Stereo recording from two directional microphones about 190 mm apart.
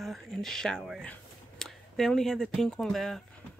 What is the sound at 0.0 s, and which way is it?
Speech, centre (ahead or behind).